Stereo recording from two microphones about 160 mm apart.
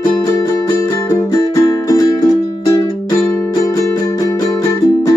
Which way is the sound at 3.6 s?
20° left (ahead or behind).